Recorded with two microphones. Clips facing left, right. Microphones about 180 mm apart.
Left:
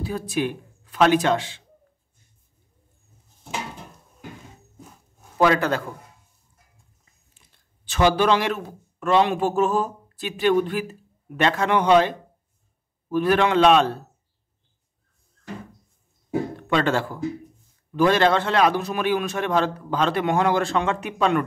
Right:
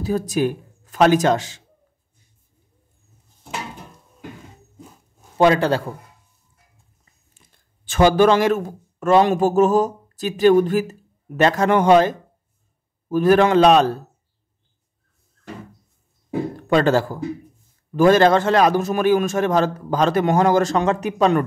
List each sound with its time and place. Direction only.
0.0 s a man's voice: 40° right (ahead or behind)
5.4 s a man's voice: 30° right (ahead or behind)
7.3 s a man's voice: 50° right (ahead or behind)
16.5 s a man's voice: 40° right (ahead or behind)